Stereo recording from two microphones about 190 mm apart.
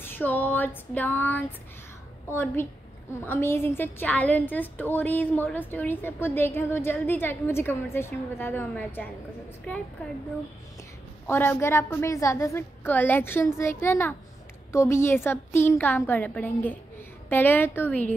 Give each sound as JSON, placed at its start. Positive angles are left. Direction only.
{"t": 0.0, "sound": "female singing", "side_deg": 10}
{"t": 2.2, "sound": "a woman's voice", "side_deg": 10}
{"t": 11.2, "sound": "a woman's voice", "side_deg": 10}